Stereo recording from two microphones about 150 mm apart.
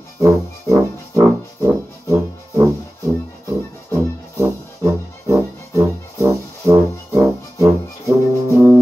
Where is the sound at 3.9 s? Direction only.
20° right (ahead or behind).